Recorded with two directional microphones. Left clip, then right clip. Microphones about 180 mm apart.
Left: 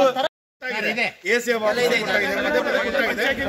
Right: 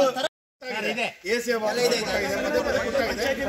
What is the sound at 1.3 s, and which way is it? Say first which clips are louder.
Speech: left 4 dB; 5° left (ahead or behind).